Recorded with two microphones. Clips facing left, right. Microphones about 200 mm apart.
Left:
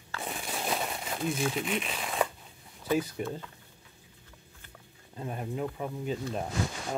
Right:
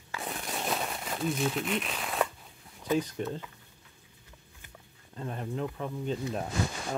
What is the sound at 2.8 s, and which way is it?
Speech, 10° left (ahead or behind).